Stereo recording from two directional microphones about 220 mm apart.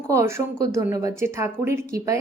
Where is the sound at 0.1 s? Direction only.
15° right (ahead or behind).